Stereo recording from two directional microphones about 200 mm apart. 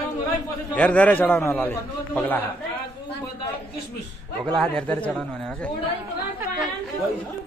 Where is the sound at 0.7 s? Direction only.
5° left (ahead or behind).